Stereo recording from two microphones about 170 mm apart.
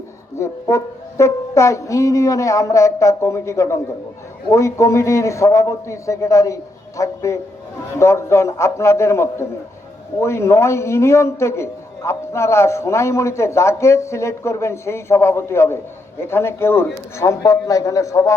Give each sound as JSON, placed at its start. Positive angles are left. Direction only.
{"t": 0.3, "sound": "a man's voice", "side_deg": 15}